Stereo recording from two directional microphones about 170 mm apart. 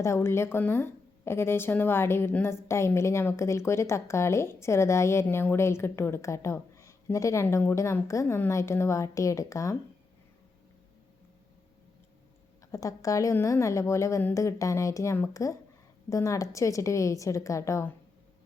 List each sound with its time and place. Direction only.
0.0 s a woman's voice: 15° left (ahead or behind)
12.7 s a woman's voice: 20° left (ahead or behind)